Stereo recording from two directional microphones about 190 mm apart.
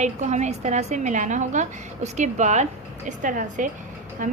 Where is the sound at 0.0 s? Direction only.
40° right (ahead or behind).